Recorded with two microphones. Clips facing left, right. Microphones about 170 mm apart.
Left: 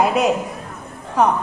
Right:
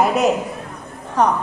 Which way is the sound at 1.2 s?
10° left (ahead or behind).